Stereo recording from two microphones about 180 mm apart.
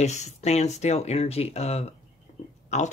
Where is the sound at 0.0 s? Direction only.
40° left (ahead or behind).